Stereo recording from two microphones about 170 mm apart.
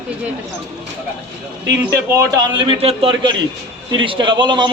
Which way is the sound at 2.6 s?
35° right (ahead or behind).